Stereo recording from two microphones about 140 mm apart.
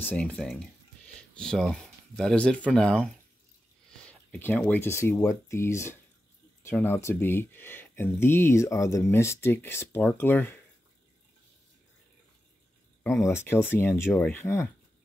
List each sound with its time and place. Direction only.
0.0 s speech: 10° left (ahead or behind)
4.1 s speech: 10° left (ahead or behind)
13.3 s speech: 15° left (ahead or behind)